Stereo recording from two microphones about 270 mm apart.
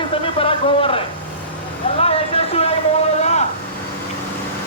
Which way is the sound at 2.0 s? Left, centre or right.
Left.